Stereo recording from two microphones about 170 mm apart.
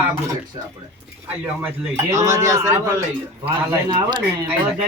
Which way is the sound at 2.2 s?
20° right (ahead or behind).